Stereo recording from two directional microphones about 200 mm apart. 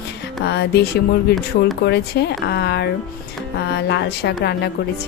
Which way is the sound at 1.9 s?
55° left (ahead or behind).